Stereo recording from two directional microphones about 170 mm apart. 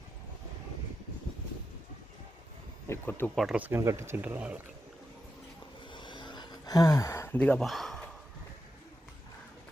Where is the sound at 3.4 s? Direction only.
5° right (ahead or behind).